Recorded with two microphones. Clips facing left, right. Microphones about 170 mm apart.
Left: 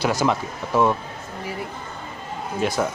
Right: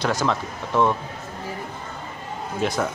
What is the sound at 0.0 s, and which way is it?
Speech, 10° left (ahead or behind).